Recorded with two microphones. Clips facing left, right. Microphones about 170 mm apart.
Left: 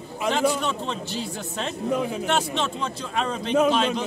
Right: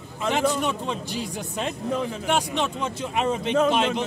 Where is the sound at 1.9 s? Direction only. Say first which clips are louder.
Left 3 dB; 10° left (ahead or behind).